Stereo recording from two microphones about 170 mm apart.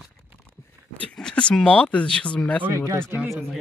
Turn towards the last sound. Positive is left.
turn(degrees=-15)  # may be behind; listen again after turning